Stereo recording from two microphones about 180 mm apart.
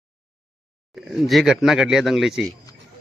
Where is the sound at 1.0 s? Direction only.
Centre (ahead or behind).